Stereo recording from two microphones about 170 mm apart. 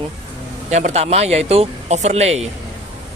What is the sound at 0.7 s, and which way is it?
Speech, 40° right (ahead or behind).